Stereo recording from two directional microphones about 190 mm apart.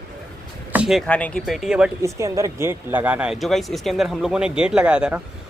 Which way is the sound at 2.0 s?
15° right (ahead or behind).